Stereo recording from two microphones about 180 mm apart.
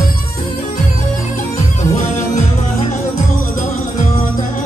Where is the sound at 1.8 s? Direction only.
45° left (ahead or behind).